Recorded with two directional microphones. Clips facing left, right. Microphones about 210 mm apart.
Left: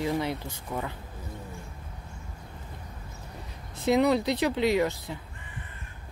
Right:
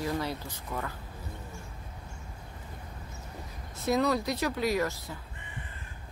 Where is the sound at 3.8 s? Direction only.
20° left (ahead or behind).